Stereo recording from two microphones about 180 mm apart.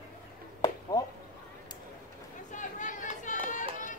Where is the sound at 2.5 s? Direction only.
45° left (ahead or behind).